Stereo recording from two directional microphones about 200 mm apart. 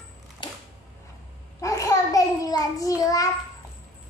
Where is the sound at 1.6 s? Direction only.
15° left (ahead or behind).